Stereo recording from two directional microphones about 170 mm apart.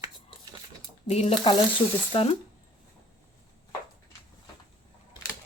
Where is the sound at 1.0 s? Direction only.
40° left (ahead or behind).